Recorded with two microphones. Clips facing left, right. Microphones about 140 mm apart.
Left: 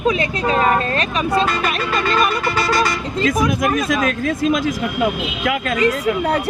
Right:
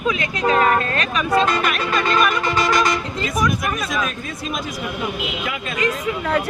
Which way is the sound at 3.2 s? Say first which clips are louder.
Left 7 dB; 90° left.